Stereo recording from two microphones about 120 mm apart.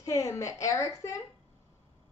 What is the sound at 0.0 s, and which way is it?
A woman's voice, 25° left (ahead or behind).